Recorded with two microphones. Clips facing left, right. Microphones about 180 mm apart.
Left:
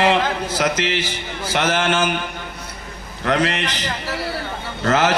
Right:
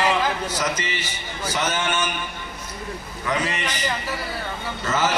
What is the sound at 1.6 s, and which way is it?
Speech, 60° left (ahead or behind).